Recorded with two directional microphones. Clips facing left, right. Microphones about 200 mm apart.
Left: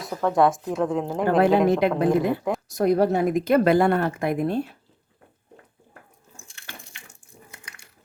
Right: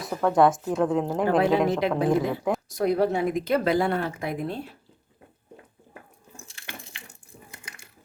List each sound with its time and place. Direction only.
0.0 s a woman's voice: centre (ahead or behind)
2.7 s a woman's voice: 45° left (ahead or behind)